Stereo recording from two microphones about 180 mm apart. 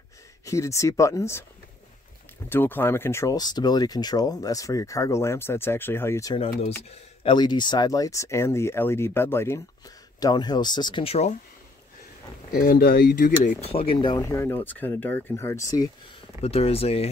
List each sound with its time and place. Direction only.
0.5 s speech: 15° left (ahead or behind)
2.5 s speech: 10° left (ahead or behind)
6.3 s speech: 35° left (ahead or behind)
7.3 s speech: 25° left (ahead or behind)
12.6 s speech: 55° left (ahead or behind)
13.6 s speech: 35° left (ahead or behind)
14.2 s speech: 15° left (ahead or behind)
16.3 s speech: 35° left (ahead or behind)